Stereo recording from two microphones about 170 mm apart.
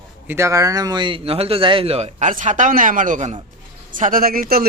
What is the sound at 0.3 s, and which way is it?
A man's voice, 15° right (ahead or behind).